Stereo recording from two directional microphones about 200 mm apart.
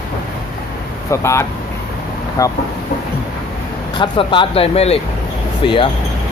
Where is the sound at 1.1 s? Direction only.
15° left (ahead or behind).